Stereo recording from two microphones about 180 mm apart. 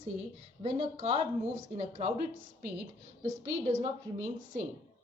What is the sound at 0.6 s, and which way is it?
Speech, 40° right (ahead or behind).